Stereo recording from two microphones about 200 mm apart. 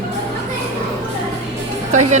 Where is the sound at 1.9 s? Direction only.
35° right (ahead or behind).